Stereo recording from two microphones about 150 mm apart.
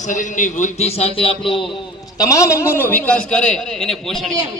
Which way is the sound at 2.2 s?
20° left (ahead or behind).